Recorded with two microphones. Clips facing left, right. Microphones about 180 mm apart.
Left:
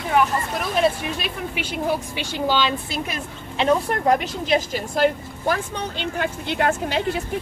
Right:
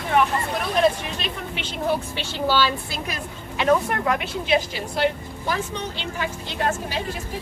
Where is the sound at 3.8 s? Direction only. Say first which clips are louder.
Left 4 dB; 40° left (ahead or behind).